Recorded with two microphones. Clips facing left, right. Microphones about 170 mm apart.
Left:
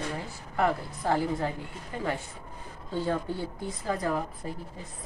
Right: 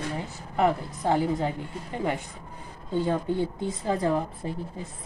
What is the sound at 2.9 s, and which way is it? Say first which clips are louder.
Speech: right 4 dB; 15° right (ahead or behind).